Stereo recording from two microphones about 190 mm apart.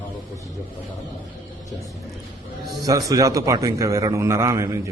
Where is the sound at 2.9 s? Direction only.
20° right (ahead or behind).